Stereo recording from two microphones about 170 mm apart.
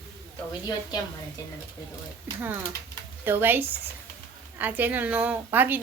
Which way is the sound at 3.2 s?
10° right (ahead or behind).